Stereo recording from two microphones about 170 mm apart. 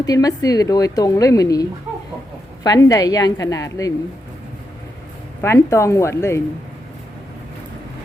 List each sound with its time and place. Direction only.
0.0 s a woman's voice: 20° left (ahead or behind)
2.6 s a woman's voice: 20° left (ahead or behind)
5.4 s speech: 15° left (ahead or behind)